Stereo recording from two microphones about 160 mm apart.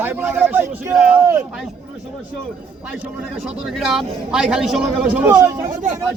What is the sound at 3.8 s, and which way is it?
A man's voice, 5° right (ahead or behind).